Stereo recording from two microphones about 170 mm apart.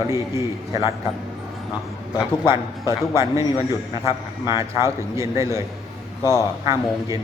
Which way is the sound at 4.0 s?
20° right (ahead or behind).